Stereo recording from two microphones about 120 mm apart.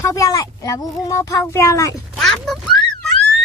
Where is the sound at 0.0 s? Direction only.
30° left (ahead or behind).